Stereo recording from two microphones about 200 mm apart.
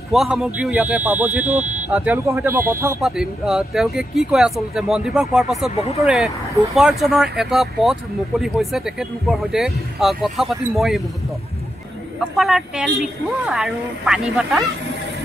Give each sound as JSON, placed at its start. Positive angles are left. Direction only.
{"t": 0.1, "sound": "speech", "side_deg": 0}
{"t": 1.5, "sound": "speech", "side_deg": -35}
{"t": 1.9, "sound": "speech", "side_deg": -5}
{"t": 3.0, "sound": "speech", "side_deg": 0}
{"t": 12.4, "sound": "speech", "side_deg": 0}